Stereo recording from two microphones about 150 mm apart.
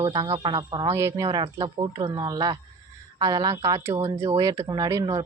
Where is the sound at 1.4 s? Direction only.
35° right (ahead or behind).